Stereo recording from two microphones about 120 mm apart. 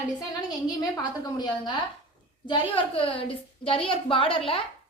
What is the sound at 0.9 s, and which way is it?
A woman's voice, 35° left (ahead or behind).